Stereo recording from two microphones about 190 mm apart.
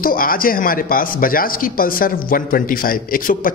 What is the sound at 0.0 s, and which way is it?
Speech, 50° left (ahead or behind).